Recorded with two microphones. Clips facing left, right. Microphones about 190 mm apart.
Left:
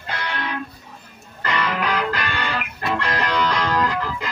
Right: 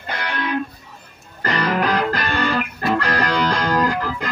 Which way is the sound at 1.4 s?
40° right (ahead or behind).